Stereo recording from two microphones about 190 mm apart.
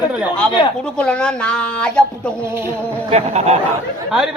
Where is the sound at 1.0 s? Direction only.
5° left (ahead or behind).